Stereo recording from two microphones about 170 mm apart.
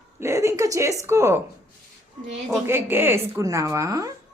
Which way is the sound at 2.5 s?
15° right (ahead or behind).